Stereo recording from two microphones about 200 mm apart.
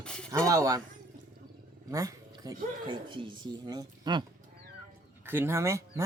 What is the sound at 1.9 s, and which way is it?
Speech, 15° right (ahead or behind).